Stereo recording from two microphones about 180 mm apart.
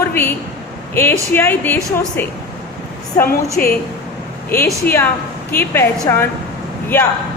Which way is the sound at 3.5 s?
55° left (ahead or behind).